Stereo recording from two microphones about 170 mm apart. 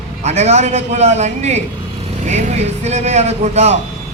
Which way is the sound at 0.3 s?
40° right (ahead or behind).